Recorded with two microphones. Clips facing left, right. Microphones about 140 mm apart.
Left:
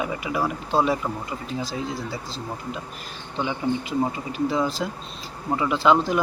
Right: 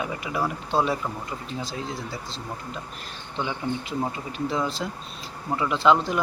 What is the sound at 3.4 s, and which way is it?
Speech, centre (ahead or behind).